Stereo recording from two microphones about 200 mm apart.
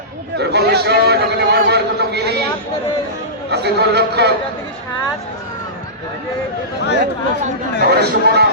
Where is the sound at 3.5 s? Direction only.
55° right (ahead or behind).